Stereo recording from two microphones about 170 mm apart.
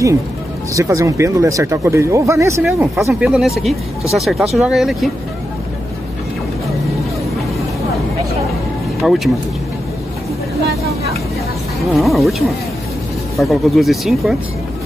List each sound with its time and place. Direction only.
0.7 s speech: 20° right (ahead or behind)
3.3 s speech: centre (ahead or behind)
9.0 s speech: centre (ahead or behind)
11.8 s speech: centre (ahead or behind)